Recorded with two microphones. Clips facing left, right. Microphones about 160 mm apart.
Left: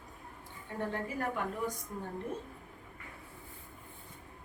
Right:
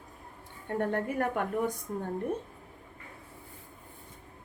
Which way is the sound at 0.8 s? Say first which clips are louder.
Right 6 dB; 60° right (ahead or behind).